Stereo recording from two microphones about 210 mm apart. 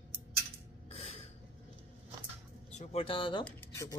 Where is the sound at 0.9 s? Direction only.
30° left (ahead or behind).